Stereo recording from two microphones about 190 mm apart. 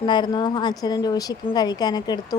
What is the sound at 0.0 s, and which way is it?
Speech, 25° left (ahead or behind).